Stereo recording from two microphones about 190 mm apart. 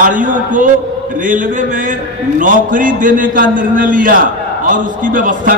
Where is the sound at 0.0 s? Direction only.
45° right (ahead or behind).